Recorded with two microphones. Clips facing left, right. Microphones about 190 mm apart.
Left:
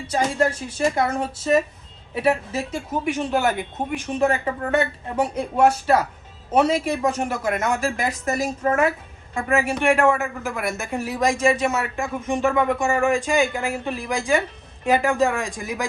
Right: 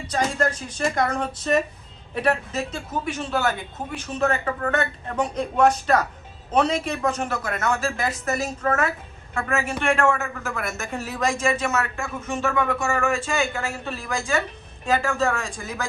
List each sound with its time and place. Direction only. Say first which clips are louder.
0.1 s a man's voice: left 2 dB; 10° left (ahead or behind)